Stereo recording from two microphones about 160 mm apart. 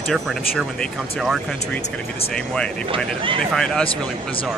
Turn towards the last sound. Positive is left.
turn(degrees=5)  # may be behind; listen again after turning